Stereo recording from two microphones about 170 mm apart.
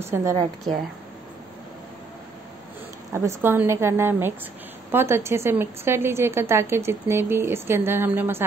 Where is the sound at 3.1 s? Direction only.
15° right (ahead or behind).